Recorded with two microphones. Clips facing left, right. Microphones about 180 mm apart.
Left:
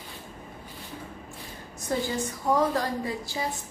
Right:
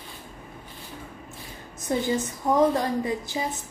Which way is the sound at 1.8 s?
20° right (ahead or behind).